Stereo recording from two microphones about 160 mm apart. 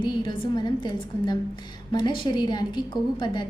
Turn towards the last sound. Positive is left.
turn(degrees=25)  # may be behind; listen again after turning